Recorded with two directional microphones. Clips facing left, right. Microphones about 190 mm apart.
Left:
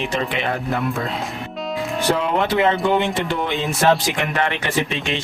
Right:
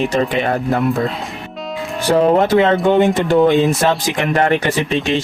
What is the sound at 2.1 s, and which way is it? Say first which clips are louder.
Speech: right 12 dB; 40° right (ahead or behind).